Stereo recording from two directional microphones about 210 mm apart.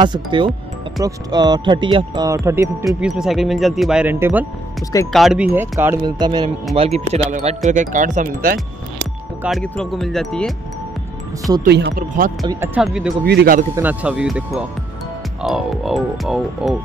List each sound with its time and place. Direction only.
0.0 s speech: 20° right (ahead or behind)
3.0 s speech: 5° right (ahead or behind); by 8.5 s 40° right (ahead or behind)
9.4 s speech: centre (ahead or behind)
11.6 s speech: 50° right (ahead or behind)
12.4 s speech: 10° right (ahead or behind)
13.2 s speech: 50° right (ahead or behind)
13.7 s speech: 5° right (ahead or behind)